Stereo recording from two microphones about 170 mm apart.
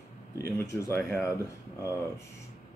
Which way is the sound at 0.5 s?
15° left (ahead or behind).